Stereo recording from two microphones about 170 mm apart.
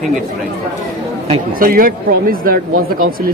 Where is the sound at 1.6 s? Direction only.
55° right (ahead or behind).